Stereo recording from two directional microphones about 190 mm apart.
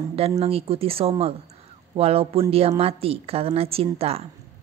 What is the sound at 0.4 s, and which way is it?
A woman's voice, 30° right (ahead or behind).